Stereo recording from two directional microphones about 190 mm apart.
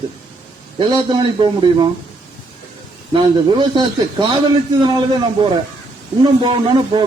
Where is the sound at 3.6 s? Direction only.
25° right (ahead or behind).